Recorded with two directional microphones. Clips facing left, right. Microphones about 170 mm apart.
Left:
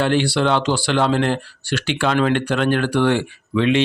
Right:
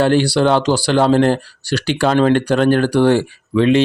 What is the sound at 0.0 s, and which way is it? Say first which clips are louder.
Speech: right 4 dB; 40° right (ahead or behind).